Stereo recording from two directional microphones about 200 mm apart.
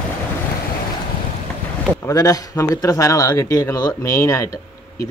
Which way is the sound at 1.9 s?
15° left (ahead or behind).